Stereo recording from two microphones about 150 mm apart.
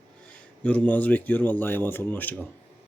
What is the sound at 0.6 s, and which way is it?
Speech, 10° left (ahead or behind).